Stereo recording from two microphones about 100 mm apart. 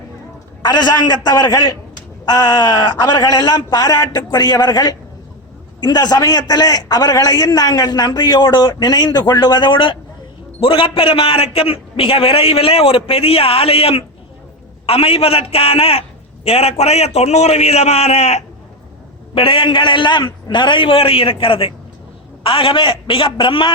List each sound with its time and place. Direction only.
0.6 s a man's voice: 45° left (ahead or behind); by 18.4 s 90° left
19.3 s a man's voice: 60° left (ahead or behind)